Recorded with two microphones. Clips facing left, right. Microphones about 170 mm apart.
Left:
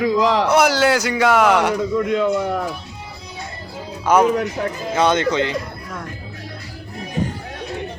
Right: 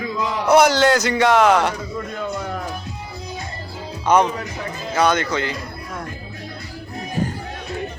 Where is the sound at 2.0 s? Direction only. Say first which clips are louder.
Left 9 dB; 80° left.